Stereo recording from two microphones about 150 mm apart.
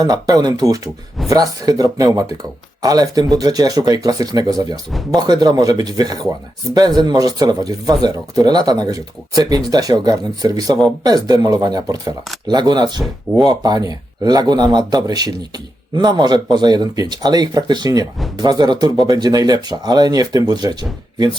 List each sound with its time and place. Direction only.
0.0 s speech: 25° right (ahead or behind)